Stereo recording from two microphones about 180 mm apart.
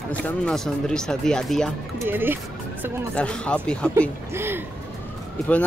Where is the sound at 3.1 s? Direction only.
5° left (ahead or behind).